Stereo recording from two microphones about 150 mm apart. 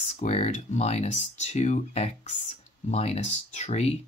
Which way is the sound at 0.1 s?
45° left (ahead or behind).